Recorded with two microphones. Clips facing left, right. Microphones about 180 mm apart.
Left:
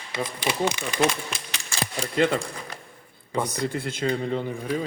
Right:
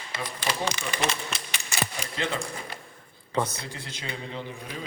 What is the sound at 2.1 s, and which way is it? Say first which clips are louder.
Speech: left 9 dB; 50° left (ahead or behind).